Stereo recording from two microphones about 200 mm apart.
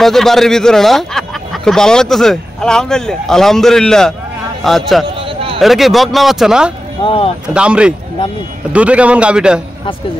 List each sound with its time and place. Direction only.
0.0 s speech: centre (ahead or behind)
5.1 s a sound: 25° right (ahead or behind)
5.6 s speech: centre (ahead or behind)
7.0 s speech: 25° left (ahead or behind)
7.4 s speech: 5° right (ahead or behind)